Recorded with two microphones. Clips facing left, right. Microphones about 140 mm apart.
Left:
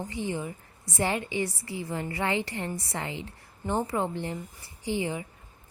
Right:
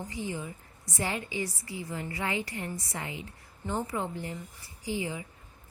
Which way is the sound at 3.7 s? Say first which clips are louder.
Left 4 dB; 20° left (ahead or behind).